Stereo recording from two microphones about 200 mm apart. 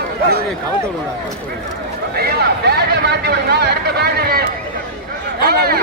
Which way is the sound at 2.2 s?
55° right (ahead or behind).